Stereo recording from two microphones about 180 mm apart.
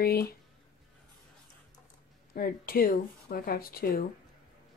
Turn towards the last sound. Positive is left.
turn(degrees=55)  # may be behind; listen again after turning